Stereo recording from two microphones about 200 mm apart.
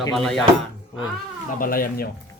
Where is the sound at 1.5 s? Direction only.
45° left (ahead or behind).